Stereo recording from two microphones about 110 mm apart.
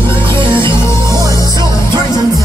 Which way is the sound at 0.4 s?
45° right (ahead or behind).